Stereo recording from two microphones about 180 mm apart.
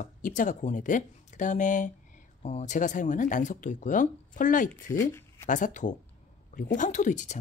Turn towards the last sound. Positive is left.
turn(degrees=45)  # may be behind; listen again after turning